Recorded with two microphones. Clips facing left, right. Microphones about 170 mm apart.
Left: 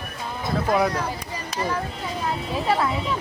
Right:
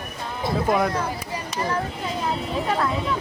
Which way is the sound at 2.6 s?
10° left (ahead or behind).